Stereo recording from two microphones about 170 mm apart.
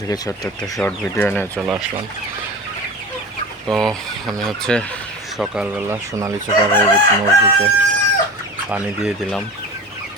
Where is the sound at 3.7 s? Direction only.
Centre (ahead or behind).